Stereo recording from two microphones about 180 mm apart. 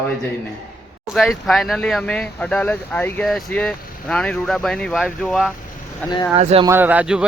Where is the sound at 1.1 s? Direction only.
Centre (ahead or behind).